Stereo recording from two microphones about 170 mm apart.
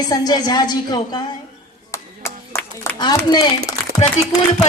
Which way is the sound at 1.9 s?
15° left (ahead or behind).